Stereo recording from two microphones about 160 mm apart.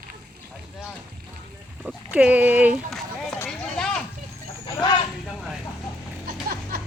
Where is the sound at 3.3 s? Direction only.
10° left (ahead or behind).